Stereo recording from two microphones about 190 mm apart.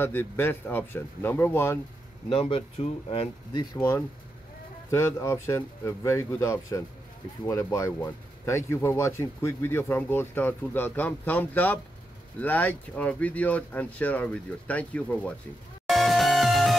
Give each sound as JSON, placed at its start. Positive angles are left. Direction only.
{"t": 0.0, "sound": "speech", "side_deg": 10}
{"t": 2.2, "sound": "speech", "side_deg": 30}
{"t": 3.7, "sound": "speech", "side_deg": 15}
{"t": 15.9, "sound": "music", "side_deg": 0}